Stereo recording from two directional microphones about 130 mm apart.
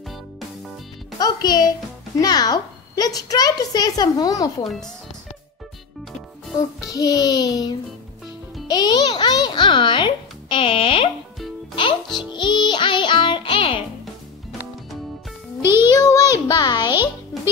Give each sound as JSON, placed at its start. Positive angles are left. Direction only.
{"t": 1.2, "sound": "a child's voice", "side_deg": 35}
{"t": 6.9, "sound": "a child's voice", "side_deg": 30}
{"t": 15.6, "sound": "a child's voice", "side_deg": -20}
{"t": 16.0, "sound": "a child's voice", "side_deg": 25}